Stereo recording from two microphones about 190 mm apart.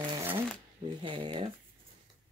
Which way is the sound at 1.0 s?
25° right (ahead or behind).